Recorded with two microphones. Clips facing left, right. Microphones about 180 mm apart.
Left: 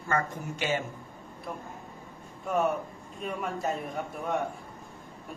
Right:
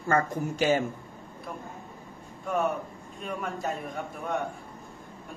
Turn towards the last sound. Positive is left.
turn(degrees=0)  # may be behind; listen again after turning